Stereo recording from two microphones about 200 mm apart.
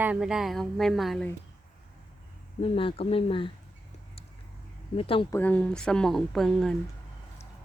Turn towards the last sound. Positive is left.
turn(degrees=0)  # may be behind; listen again after turning